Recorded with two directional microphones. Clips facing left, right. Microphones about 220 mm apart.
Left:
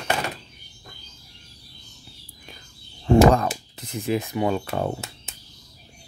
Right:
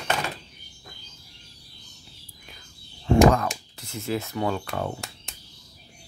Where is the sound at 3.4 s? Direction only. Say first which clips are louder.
Left 3 dB; 20° left (ahead or behind).